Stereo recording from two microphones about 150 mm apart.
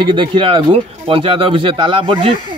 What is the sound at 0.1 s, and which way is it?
A man's voice, 35° right (ahead or behind).